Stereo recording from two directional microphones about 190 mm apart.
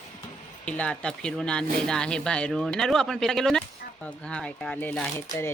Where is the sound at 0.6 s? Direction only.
5° left (ahead or behind).